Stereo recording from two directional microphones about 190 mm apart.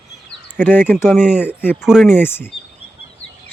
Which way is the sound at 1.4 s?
10° left (ahead or behind).